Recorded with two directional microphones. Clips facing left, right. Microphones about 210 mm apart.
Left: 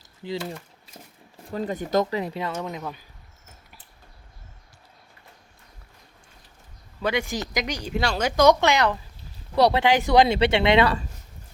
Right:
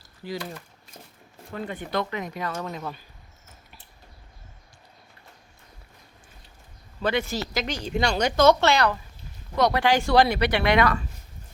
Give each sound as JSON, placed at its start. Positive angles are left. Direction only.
{"t": 0.0, "sound": "a sound", "side_deg": 20}
{"t": 1.5, "sound": "speech", "side_deg": 35}
{"t": 7.0, "sound": "speech", "side_deg": 15}
{"t": 8.4, "sound": "speech", "side_deg": 15}
{"t": 9.6, "sound": "speech", "side_deg": 30}
{"t": 9.8, "sound": "speech", "side_deg": 20}